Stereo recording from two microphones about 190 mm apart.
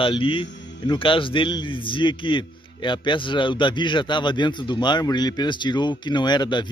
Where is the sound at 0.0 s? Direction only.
25° left (ahead or behind).